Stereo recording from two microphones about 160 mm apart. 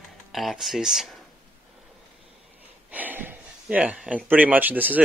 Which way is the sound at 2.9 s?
10° right (ahead or behind).